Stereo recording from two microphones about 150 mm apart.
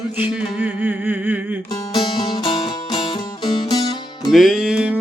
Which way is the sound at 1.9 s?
30° left (ahead or behind).